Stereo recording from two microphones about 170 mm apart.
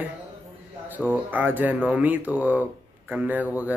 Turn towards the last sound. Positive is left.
turn(degrees=-10)  # may be behind; listen again after turning